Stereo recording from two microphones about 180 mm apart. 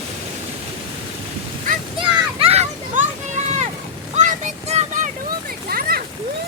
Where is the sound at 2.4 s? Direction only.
35° right (ahead or behind).